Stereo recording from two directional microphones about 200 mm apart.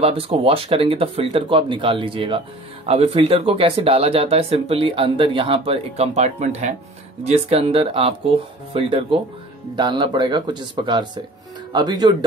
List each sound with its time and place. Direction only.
0.0 s speech: 30° right (ahead or behind)